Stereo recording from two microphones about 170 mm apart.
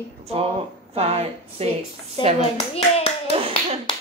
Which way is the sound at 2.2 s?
25° left (ahead or behind).